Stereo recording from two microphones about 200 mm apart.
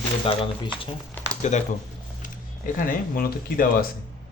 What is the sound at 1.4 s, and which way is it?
Speech, 35° left (ahead or behind).